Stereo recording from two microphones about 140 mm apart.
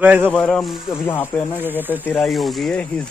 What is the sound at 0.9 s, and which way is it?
Speech, 15° left (ahead or behind).